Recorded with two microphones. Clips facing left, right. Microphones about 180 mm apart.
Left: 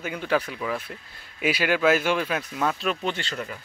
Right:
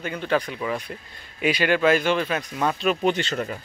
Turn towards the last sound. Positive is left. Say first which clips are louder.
# right 7 dB
turn(degrees=-20)  # may be behind; listen again after turning